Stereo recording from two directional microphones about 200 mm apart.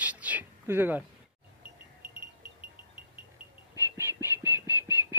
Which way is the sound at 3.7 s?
10° right (ahead or behind).